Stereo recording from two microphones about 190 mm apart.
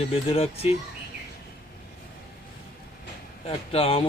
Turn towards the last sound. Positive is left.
turn(degrees=30)  # may be behind; listen again after turning